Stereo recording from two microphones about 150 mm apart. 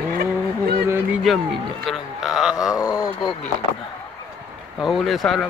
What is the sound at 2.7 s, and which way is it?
Speech, 20° left (ahead or behind).